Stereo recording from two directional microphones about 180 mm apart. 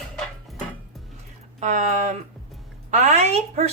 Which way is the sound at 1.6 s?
40° right (ahead or behind).